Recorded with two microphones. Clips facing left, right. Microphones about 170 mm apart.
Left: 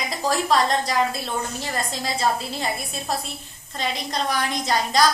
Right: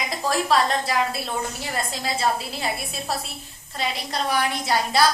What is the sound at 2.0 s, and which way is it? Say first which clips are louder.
Speech: left 1 dB; 5° right (ahead or behind).